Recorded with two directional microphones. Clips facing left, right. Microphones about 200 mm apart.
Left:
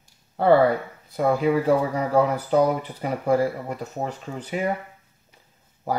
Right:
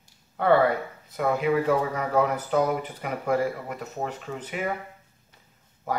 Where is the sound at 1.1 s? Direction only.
35° left (ahead or behind).